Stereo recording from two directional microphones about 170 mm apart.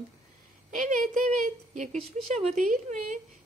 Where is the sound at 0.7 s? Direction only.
50° right (ahead or behind).